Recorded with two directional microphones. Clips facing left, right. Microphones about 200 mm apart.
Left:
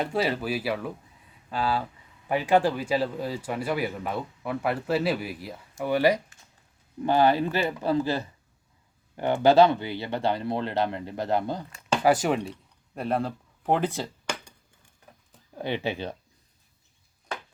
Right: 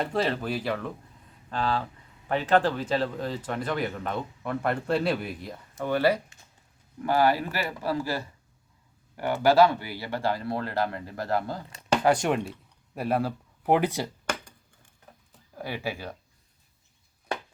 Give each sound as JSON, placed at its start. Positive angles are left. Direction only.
{"t": 0.0, "sound": "a man's voice", "side_deg": 5}
{"t": 12.0, "sound": "speech", "side_deg": 5}
{"t": 15.5, "sound": "speech", "side_deg": 25}